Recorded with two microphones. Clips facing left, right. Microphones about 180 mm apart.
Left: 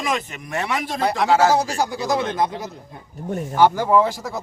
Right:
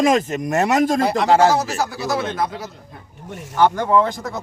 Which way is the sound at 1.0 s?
Centre (ahead or behind).